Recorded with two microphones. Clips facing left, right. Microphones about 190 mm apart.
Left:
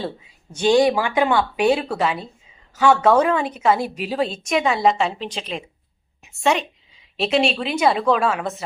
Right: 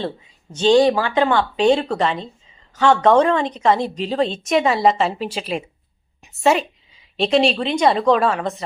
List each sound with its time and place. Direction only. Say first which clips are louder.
0.5 s a woman's voice: right 2 dB; 10° left (ahead or behind)